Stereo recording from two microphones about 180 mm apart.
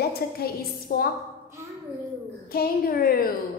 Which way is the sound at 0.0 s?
60° left (ahead or behind).